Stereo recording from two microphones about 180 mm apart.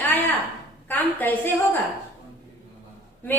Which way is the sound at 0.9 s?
10° left (ahead or behind).